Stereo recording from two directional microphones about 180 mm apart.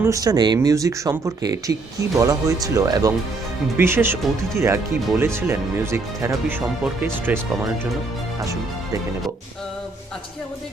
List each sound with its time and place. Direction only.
0.0 s speech: 20° right (ahead or behind)